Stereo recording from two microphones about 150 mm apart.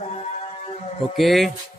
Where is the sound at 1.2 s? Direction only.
Centre (ahead or behind).